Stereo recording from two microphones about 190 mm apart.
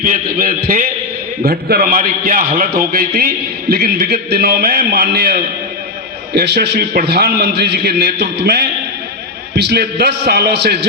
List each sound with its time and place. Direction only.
0.0 s a man's voice: 50° right (ahead or behind)